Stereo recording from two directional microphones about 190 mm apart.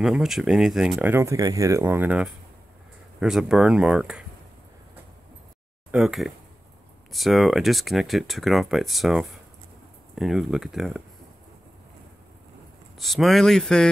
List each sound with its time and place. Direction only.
0.0 s speech: centre (ahead or behind)
5.9 s speech: 5° right (ahead or behind)
12.9 s speech: centre (ahead or behind)